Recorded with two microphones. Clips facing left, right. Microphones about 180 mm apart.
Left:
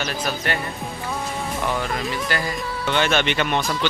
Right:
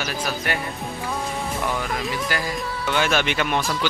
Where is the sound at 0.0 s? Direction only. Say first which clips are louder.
Left 1 dB; 10° right (ahead or behind).